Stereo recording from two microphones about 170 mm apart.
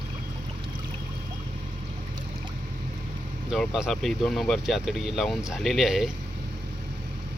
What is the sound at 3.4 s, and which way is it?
Speech, centre (ahead or behind).